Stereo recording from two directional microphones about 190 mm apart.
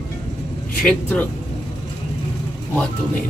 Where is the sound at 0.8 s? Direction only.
5° left (ahead or behind).